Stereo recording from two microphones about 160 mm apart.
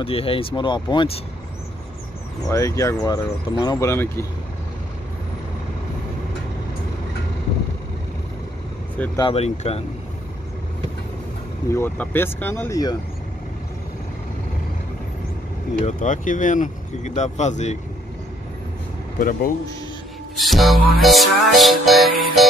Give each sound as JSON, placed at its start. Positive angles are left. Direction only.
{"t": 0.0, "sound": "speech", "side_deg": 35}
{"t": 2.5, "sound": "speech", "side_deg": 20}
{"t": 9.3, "sound": "speech", "side_deg": 40}
{"t": 11.7, "sound": "speech", "side_deg": 15}
{"t": 15.8, "sound": "speech", "side_deg": 50}
{"t": 19.1, "sound": "speech", "side_deg": 60}
{"t": 20.3, "sound": "music", "side_deg": 0}